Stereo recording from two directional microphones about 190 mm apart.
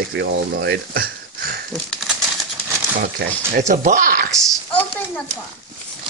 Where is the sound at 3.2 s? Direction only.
55° right (ahead or behind).